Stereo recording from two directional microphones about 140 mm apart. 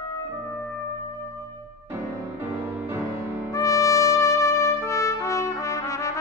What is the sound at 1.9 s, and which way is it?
Music, 15° right (ahead or behind).